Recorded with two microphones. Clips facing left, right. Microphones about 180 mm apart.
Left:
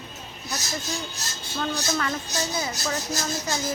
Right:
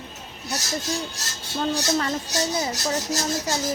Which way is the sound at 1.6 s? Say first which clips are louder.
Right 4 dB; 30° right (ahead or behind).